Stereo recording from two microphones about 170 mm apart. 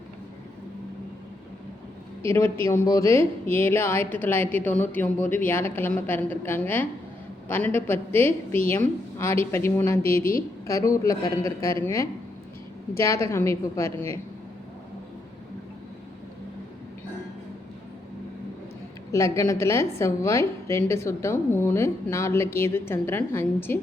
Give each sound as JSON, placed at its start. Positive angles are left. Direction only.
{"t": 2.2, "sound": "a woman's voice", "side_deg": 15}
{"t": 19.1, "sound": "a woman's voice", "side_deg": 15}